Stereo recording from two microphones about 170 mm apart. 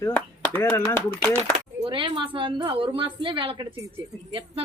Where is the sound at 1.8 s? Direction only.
30° right (ahead or behind).